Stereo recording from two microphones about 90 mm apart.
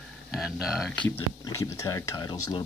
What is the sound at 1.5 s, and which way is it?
Speech, 35° left (ahead or behind).